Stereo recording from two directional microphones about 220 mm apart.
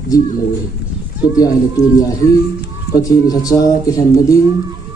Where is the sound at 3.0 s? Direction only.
15° left (ahead or behind).